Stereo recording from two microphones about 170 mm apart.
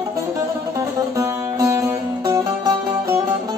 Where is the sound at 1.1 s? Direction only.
20° right (ahead or behind).